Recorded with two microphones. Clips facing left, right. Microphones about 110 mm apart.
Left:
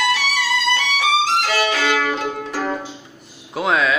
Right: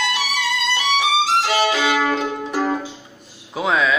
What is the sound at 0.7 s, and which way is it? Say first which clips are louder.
Violin: right 3 dB; 20° right (ahead or behind).